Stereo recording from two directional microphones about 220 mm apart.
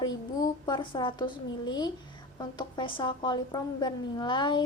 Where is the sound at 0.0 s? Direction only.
20° left (ahead or behind).